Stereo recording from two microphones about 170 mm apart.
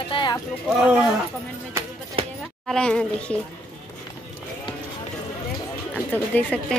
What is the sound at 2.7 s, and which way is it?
Speech, 5° left (ahead or behind).